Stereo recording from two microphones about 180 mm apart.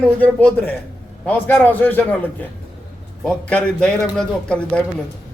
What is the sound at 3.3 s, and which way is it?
A man's voice, 5° left (ahead or behind).